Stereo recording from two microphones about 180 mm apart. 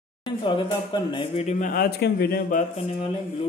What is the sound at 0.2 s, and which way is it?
Speech, 25° left (ahead or behind).